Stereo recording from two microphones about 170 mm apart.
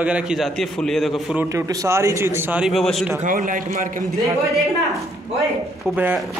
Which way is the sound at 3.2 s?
50° right (ahead or behind).